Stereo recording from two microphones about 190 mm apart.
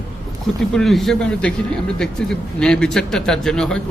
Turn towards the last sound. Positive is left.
turn(degrees=5)  # may be behind; listen again after turning